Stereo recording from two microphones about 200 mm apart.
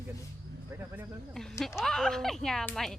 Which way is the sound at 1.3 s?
Centre (ahead or behind).